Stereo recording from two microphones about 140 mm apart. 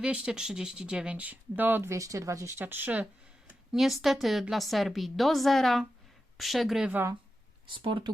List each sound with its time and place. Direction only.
0.0 s speech: 5° right (ahead or behind)
3.7 s a woman's voice: centre (ahead or behind)
6.9 s speech: 20° right (ahead or behind)
7.7 s speech: 35° right (ahead or behind)